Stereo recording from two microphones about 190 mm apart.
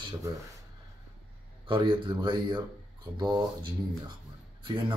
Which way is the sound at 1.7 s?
25° right (ahead or behind).